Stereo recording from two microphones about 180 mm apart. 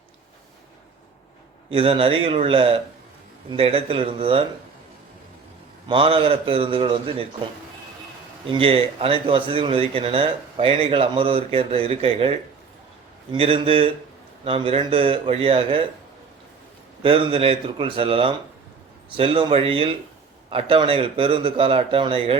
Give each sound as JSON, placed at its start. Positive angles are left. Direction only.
{"t": 1.7, "sound": "speech", "side_deg": -30}
{"t": 5.9, "sound": "speech", "side_deg": -30}
{"t": 8.5, "sound": "speech", "side_deg": -30}
{"t": 13.3, "sound": "speech", "side_deg": -30}
{"t": 17.0, "sound": "speech", "side_deg": -30}